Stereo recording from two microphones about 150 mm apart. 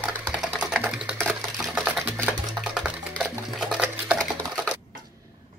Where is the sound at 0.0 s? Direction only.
5° right (ahead or behind).